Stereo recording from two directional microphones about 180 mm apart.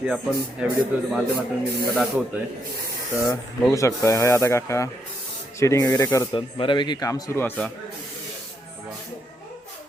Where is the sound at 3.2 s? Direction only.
15° left (ahead or behind).